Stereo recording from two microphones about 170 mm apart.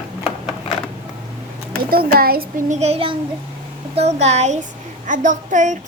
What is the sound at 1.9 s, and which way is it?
Speech, 60° right (ahead or behind).